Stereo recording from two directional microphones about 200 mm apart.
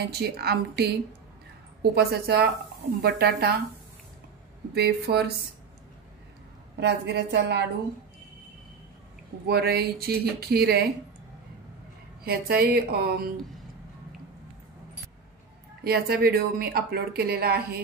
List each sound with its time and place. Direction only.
0.1 s a woman's voice: 55° right (ahead or behind)
4.7 s speech: 55° right (ahead or behind)
6.8 s a woman's voice: 55° right (ahead or behind)
9.5 s speech: 50° right (ahead or behind)
12.3 s speech: 50° right (ahead or behind)
15.8 s speech: 50° right (ahead or behind)